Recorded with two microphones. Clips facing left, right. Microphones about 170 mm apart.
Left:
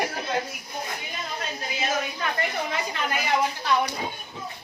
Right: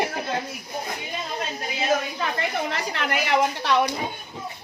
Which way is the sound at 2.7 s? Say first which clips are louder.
Right 2 dB; 75° right (ahead or behind).